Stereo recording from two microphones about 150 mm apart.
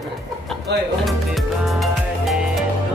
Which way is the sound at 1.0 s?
Centre (ahead or behind).